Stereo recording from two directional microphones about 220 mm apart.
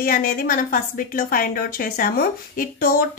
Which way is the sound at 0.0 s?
40° left (ahead or behind).